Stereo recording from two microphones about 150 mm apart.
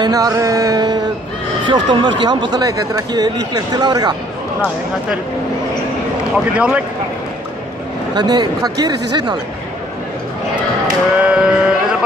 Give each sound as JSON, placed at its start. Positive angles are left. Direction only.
{"t": 0.0, "sound": "music", "side_deg": -25}
{"t": 1.6, "sound": "speech", "side_deg": -30}
{"t": 6.3, "sound": "speech", "side_deg": -10}
{"t": 8.1, "sound": "speech", "side_deg": -30}
{"t": 11.2, "sound": "music", "side_deg": -5}